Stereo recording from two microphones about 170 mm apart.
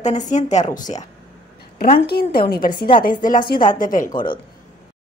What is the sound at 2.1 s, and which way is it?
Speech, 65° left (ahead or behind).